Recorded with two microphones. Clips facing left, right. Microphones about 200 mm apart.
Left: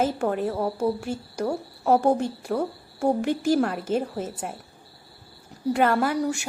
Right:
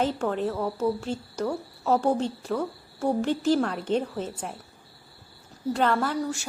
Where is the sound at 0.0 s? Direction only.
10° left (ahead or behind).